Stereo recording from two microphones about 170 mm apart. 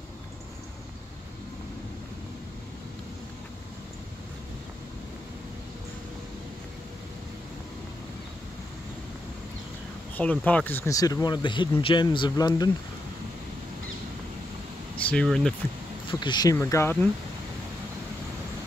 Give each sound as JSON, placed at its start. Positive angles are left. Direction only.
{"t": 10.1, "sound": "speech", "side_deg": 10}
{"t": 15.0, "sound": "speech", "side_deg": 5}
{"t": 16.1, "sound": "speech", "side_deg": 25}